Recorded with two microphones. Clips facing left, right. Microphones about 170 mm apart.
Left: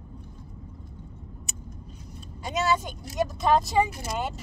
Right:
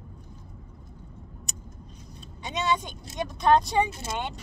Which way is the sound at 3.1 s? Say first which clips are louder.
Right 1 dB; 5° left (ahead or behind).